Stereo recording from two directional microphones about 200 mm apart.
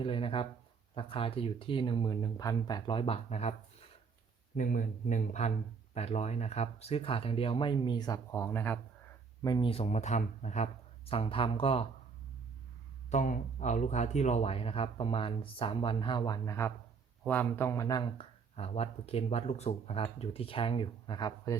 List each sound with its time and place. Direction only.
0.0 s speech: 25° left (ahead or behind)
4.5 s speech: 40° left (ahead or behind); by 8.8 s 10° left (ahead or behind)
9.4 s speech: 20° left (ahead or behind)
13.1 s speech: 40° left (ahead or behind); by 21.5 s 20° left (ahead or behind)